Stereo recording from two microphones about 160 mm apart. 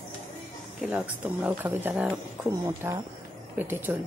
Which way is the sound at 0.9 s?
10° right (ahead or behind).